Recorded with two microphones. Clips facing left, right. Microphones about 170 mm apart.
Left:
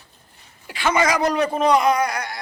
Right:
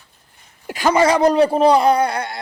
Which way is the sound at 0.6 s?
40° right (ahead or behind).